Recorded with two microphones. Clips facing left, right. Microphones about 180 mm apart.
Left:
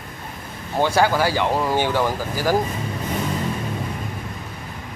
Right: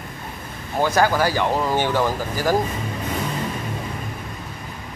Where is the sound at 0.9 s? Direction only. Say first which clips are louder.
Even; 10° left (ahead or behind).